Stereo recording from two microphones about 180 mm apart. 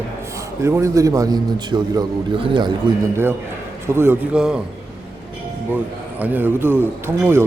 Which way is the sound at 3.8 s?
15° right (ahead or behind).